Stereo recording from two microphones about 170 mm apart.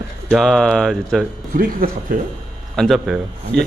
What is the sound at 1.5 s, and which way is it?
Speech, 55° right (ahead or behind).